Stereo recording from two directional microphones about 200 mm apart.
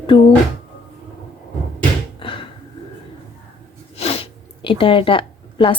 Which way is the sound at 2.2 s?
25° left (ahead or behind).